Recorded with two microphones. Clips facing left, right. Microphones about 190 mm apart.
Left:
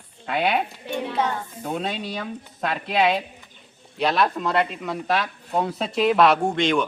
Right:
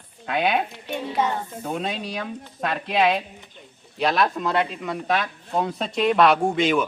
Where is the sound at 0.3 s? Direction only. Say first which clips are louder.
Even; centre (ahead or behind).